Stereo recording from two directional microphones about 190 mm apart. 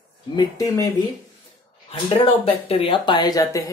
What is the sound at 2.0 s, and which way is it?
Speech, 30° left (ahead or behind).